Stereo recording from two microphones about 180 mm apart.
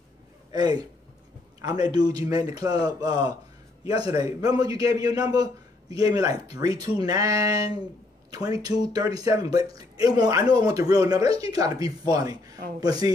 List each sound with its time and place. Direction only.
0.5 s a man's voice: 20° right (ahead or behind)